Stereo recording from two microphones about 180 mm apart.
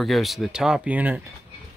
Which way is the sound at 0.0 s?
Centre (ahead or behind).